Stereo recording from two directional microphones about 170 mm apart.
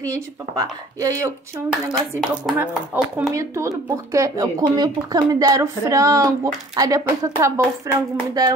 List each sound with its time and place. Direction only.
1.7 s speech: centre (ahead or behind)
2.5 s a woman's voice: 10° right (ahead or behind)